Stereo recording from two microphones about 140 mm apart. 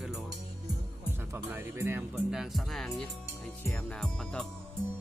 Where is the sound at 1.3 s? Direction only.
15° right (ahead or behind).